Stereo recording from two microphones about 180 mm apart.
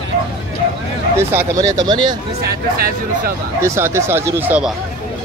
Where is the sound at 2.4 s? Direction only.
55° right (ahead or behind).